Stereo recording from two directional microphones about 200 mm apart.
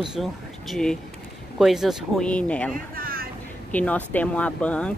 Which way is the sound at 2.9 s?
45° right (ahead or behind).